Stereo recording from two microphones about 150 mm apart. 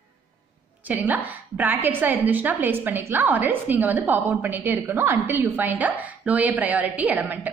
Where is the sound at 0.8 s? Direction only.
10° right (ahead or behind).